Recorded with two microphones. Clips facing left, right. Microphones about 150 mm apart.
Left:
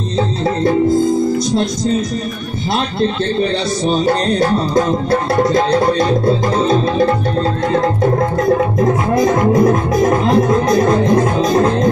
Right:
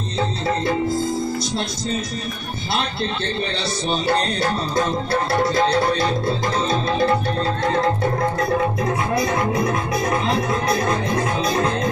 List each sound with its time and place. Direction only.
4.0 s music: 45° left (ahead or behind)
8.7 s music: 45° left (ahead or behind)